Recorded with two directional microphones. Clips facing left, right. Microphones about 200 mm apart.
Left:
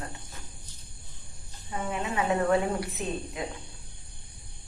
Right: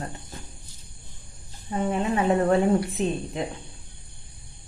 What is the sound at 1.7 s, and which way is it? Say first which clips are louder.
Speech: right 7 dB; 35° right (ahead or behind).